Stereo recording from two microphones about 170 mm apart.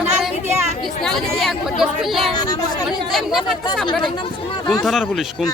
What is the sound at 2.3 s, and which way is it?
Speech, 20° left (ahead or behind).